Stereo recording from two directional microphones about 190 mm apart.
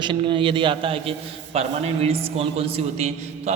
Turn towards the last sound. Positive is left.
turn(degrees=-35)  # may be behind; listen again after turning